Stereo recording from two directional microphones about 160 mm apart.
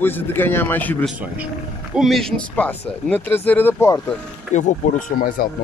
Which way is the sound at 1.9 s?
Centre (ahead or behind).